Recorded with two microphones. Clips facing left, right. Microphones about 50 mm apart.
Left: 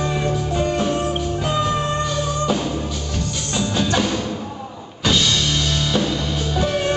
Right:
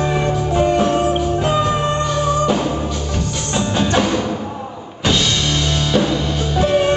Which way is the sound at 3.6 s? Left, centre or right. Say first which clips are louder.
Right 3 dB; centre.